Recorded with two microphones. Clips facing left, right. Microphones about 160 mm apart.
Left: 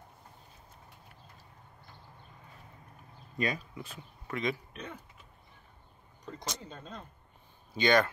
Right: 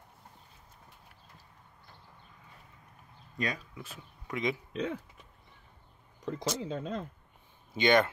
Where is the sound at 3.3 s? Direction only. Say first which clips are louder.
Left 2 dB; centre (ahead or behind).